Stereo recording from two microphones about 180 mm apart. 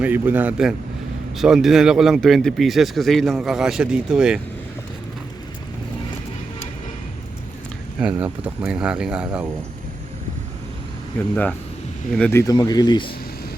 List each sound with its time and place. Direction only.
0.0 s a man's voice: 10° right (ahead or behind)
7.9 s speech: 5° right (ahead or behind)
12.1 s speech: 10° left (ahead or behind); by 13.1 s 25° left (ahead or behind)